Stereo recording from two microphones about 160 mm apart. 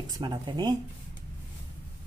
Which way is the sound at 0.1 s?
25° right (ahead or behind).